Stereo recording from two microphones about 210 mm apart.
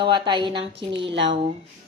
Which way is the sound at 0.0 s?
20° right (ahead or behind).